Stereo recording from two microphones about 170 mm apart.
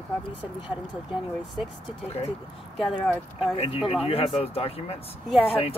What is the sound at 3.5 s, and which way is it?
Speech, 35° left (ahead or behind).